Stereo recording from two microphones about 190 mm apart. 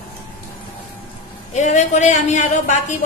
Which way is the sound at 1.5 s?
40° left (ahead or behind).